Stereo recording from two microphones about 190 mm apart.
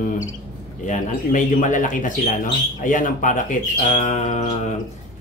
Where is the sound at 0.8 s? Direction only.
40° left (ahead or behind).